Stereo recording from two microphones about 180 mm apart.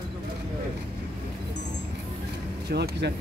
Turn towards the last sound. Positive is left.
turn(degrees=-65)  # may be behind; listen again after turning